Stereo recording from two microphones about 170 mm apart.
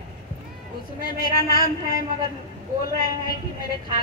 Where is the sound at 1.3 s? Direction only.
60° left (ahead or behind).